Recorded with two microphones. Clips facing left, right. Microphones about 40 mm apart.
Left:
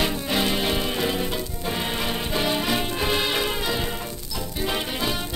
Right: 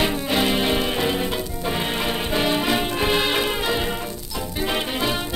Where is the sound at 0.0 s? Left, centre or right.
Centre.